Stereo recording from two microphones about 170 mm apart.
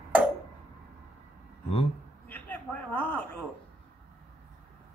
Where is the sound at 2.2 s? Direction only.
10° left (ahead or behind).